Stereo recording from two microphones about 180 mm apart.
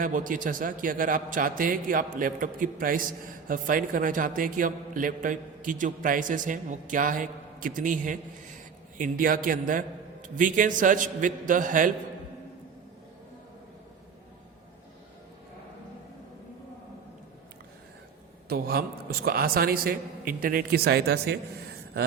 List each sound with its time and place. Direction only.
0.0 s a man's voice: 50° right (ahead or behind)
18.4 s a man's voice: 60° right (ahead or behind)